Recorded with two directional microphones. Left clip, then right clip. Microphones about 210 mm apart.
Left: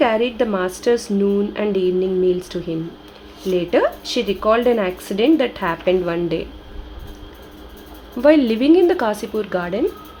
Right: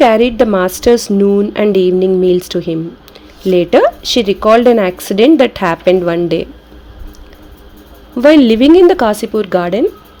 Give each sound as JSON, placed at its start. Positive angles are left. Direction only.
{"t": 0.0, "sound": "speech", "side_deg": -35}
{"t": 8.2, "sound": "speech", "side_deg": -35}